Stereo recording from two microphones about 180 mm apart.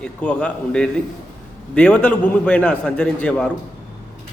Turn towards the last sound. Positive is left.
turn(degrees=5)  # may be behind; listen again after turning